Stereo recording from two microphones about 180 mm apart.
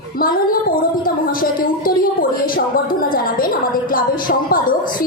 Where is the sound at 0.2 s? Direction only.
55° left (ahead or behind).